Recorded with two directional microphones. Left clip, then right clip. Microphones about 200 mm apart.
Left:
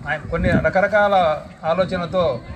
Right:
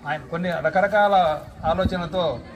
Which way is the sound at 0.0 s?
25° left (ahead or behind).